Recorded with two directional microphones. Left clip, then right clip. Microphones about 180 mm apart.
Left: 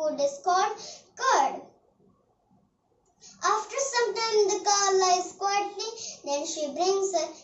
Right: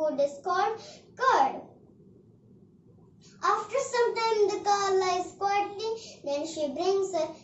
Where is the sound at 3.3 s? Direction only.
25° right (ahead or behind).